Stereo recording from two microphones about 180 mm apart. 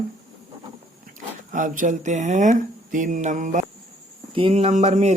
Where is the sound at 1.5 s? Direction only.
45° right (ahead or behind).